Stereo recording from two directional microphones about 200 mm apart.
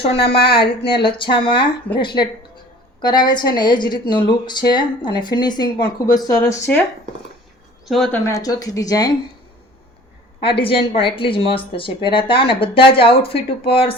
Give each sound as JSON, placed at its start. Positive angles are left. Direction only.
{"t": 0.0, "sound": "a woman's voice", "side_deg": 30}
{"t": 7.9, "sound": "speech", "side_deg": 0}
{"t": 8.3, "sound": "a woman's voice", "side_deg": 20}
{"t": 10.4, "sound": "a woman's voice", "side_deg": 25}